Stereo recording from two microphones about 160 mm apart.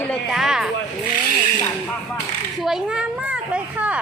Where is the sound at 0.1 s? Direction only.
Centre (ahead or behind).